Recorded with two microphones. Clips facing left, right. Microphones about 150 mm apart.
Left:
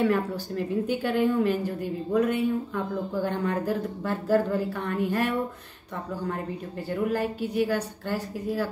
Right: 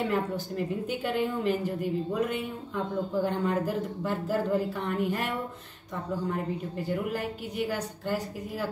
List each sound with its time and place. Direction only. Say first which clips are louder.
0.0 s a woman's voice: left 4 dB; 20° right (ahead or behind)
6.9 s a woman's voice: left 5 dB; 15° right (ahead or behind)